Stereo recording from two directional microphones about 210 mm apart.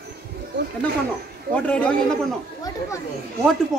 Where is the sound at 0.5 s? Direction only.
55° right (ahead or behind).